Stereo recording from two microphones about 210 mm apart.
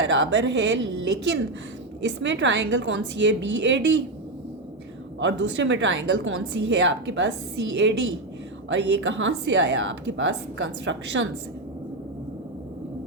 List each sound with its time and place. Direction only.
0.0 s a woman's voice: 60° right (ahead or behind)
5.2 s a woman's voice: 60° right (ahead or behind)